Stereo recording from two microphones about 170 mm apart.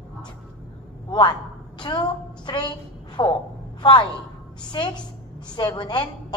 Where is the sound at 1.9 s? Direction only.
25° left (ahead or behind).